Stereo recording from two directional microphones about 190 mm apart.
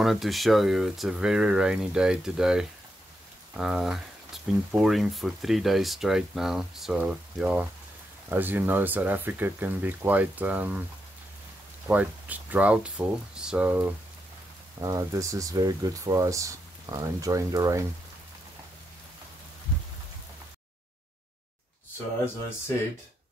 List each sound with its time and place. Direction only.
0.0 s speech: centre (ahead or behind)
11.9 s speech: 10° right (ahead or behind)
14.8 s speech: 20° right (ahead or behind)